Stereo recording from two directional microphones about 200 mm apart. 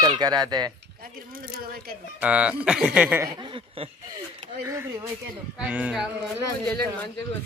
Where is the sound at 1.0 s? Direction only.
45° right (ahead or behind).